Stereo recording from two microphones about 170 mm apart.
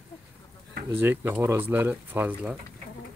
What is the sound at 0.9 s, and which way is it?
Speech, 15° right (ahead or behind).